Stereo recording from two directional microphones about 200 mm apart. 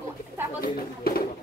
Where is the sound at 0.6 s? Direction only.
50° left (ahead or behind).